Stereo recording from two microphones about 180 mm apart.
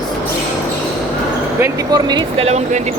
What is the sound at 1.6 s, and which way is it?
Speech, 20° right (ahead or behind).